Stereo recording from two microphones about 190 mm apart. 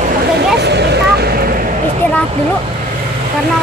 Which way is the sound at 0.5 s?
60° right (ahead or behind).